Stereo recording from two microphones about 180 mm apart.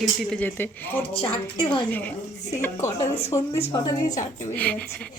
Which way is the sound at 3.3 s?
20° left (ahead or behind).